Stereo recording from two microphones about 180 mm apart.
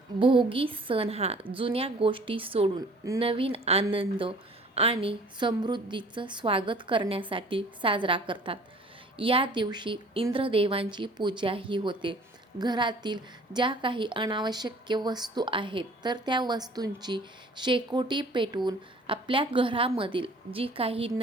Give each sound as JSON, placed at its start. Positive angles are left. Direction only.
{"t": 0.2, "sound": "a woman's voice", "side_deg": -30}